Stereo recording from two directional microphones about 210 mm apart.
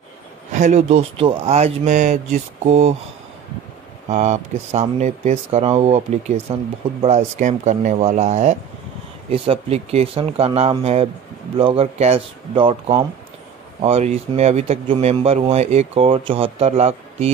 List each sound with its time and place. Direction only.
0.5 s speech: 35° right (ahead or behind)
4.1 s speech: 30° right (ahead or behind)